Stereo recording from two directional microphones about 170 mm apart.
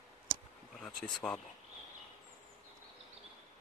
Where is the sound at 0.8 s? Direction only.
5° left (ahead or behind).